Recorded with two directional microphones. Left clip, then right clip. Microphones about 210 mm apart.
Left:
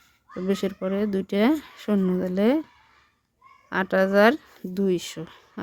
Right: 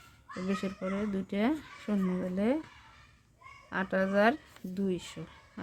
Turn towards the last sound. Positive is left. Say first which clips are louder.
# left 9 dB
turn(degrees=45)  # may be behind; listen again after turning